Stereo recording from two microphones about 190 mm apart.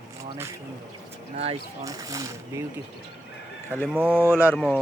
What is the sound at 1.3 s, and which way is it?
Speech, 35° right (ahead or behind).